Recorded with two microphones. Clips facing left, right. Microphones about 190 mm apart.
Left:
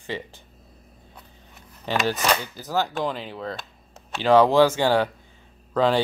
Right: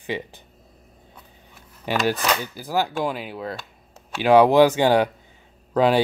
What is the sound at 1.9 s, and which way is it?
A man's voice, 10° right (ahead or behind).